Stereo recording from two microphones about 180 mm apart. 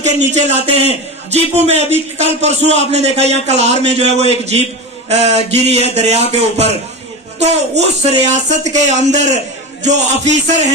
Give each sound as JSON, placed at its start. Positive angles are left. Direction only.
{"t": 0.0, "sound": "a man's voice", "side_deg": -40}